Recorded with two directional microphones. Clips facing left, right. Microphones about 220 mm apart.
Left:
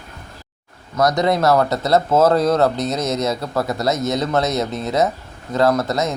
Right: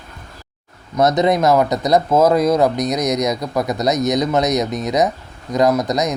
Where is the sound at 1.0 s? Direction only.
20° right (ahead or behind).